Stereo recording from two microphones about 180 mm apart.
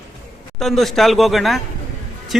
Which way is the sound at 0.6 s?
Centre (ahead or behind).